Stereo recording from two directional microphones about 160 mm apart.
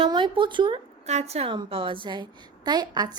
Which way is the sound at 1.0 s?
45° right (ahead or behind).